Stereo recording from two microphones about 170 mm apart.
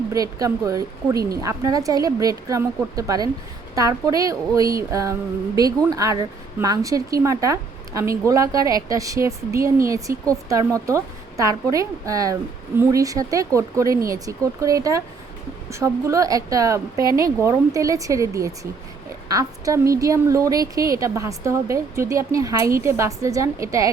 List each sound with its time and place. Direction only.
0.1 s a woman's voice: 20° right (ahead or behind)